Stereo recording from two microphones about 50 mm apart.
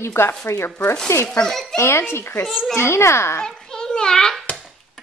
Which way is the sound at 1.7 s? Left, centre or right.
Left.